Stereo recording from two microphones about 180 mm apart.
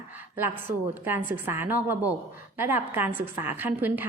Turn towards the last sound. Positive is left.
turn(degrees=-10)  # may be behind; listen again after turning